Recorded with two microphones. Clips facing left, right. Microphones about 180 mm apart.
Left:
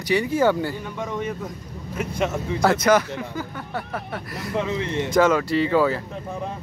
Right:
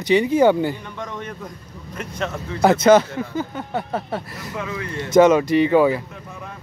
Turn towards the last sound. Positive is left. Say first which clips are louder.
# right 4 dB
turn(degrees=-15)  # may be behind; listen again after turning